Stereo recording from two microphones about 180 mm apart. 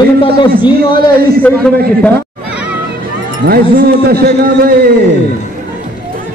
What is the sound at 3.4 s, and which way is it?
Speech, 70° right (ahead or behind).